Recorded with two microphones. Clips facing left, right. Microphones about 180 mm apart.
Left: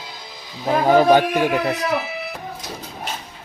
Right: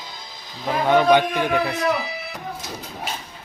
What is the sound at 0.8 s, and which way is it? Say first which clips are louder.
Speech: left 2 dB; 35° left (ahead or behind).